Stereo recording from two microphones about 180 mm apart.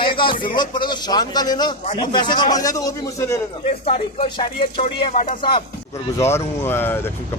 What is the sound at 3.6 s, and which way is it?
Speech, 35° left (ahead or behind).